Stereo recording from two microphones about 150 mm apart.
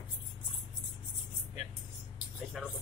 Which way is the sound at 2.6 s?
Centre (ahead or behind).